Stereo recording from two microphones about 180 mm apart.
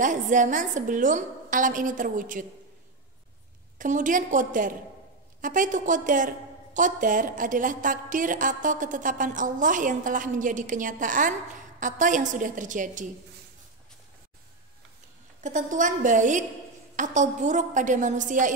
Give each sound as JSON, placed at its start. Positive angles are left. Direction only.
{"t": 0.0, "sound": "a woman's voice", "side_deg": -45}
{"t": 3.7, "sound": "a woman's voice", "side_deg": -45}
{"t": 15.4, "sound": "a woman's voice", "side_deg": -45}